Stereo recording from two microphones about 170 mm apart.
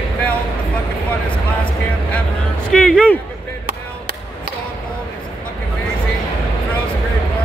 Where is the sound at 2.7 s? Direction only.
5° left (ahead or behind).